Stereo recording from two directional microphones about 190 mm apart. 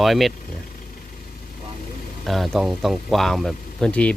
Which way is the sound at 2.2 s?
Centre (ahead or behind).